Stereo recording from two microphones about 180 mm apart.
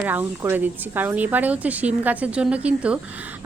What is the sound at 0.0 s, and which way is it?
A woman's voice, 10° right (ahead or behind).